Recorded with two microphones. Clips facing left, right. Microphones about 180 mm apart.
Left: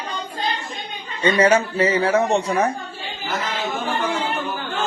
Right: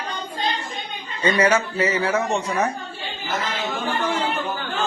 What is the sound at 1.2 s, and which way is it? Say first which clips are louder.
Speech: left 3 dB; 30° left (ahead or behind).